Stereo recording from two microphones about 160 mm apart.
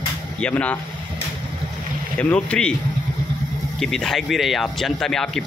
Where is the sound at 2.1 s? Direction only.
5° left (ahead or behind).